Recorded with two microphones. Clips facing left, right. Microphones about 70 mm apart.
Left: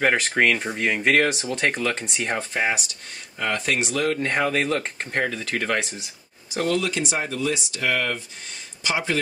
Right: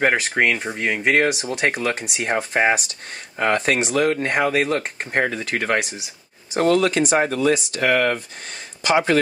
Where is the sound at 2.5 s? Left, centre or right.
Right.